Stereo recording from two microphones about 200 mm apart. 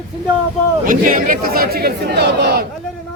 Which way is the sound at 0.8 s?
45° right (ahead or behind).